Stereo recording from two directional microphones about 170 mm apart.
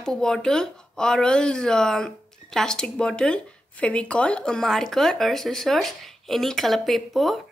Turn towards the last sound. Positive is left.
turn(degrees=0)  # may be behind; listen again after turning